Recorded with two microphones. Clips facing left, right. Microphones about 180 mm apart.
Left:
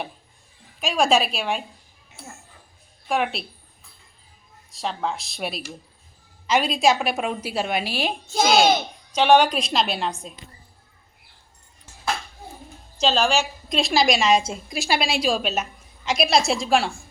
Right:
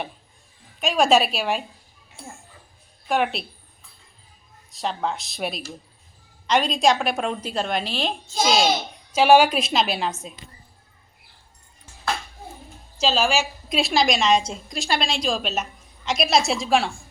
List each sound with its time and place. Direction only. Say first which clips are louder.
0.8 s a woman's voice: right 2 dB; centre (ahead or behind)
3.1 s a woman's voice: right 1 dB; centre (ahead or behind)
4.7 s a woman's voice: right 1 dB; centre (ahead or behind)
8.3 s a child's voice: left 3 dB; 60° left (ahead or behind)
9.1 s a woman's voice: right 1 dB; 5° right (ahead or behind)
13.0 s a woman's voice: left 1 dB; 5° right (ahead or behind)